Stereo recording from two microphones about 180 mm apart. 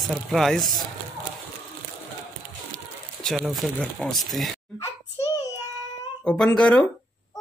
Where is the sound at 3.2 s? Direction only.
Centre (ahead or behind).